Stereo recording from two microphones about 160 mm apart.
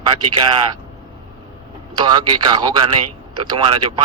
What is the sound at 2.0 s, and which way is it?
Speech, 25° right (ahead or behind).